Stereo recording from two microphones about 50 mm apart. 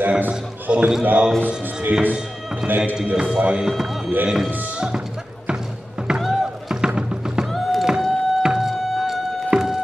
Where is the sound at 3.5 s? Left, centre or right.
Centre.